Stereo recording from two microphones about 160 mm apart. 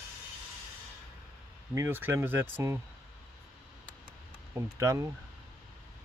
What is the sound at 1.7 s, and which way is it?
Speech, 15° right (ahead or behind).